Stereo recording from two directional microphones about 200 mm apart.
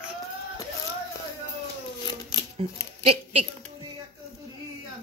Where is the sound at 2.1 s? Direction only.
20° left (ahead or behind).